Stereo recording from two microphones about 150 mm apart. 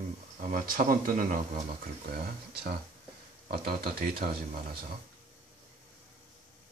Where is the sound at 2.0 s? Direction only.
90° right.